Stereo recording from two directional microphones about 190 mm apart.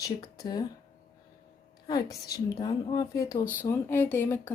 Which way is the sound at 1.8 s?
20° left (ahead or behind).